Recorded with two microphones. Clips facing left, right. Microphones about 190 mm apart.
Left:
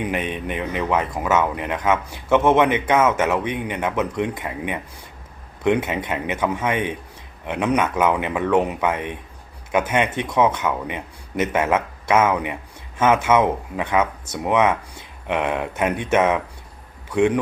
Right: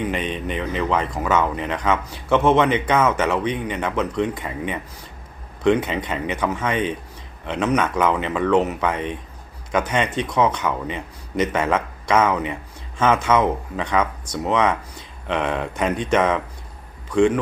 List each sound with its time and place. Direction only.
0.0 s speech: 10° left (ahead or behind)
10.1 s speech: 25° left (ahead or behind)
10.3 s speech: 10° left (ahead or behind)